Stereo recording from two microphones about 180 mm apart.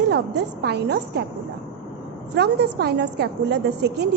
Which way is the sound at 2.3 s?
70° right (ahead or behind).